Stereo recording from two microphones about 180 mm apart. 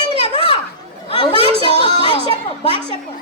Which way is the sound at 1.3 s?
30° right (ahead or behind).